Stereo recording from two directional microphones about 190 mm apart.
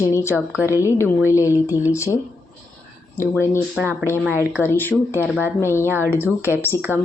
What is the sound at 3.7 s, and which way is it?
Speech, 10° right (ahead or behind).